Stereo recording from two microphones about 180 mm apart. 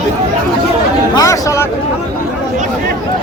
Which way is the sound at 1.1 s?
15° left (ahead or behind).